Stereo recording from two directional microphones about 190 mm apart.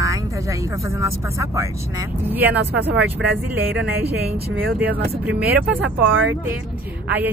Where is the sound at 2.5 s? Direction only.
60° right (ahead or behind).